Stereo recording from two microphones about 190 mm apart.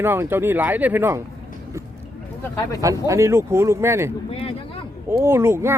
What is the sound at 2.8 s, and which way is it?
Speech, 15° right (ahead or behind).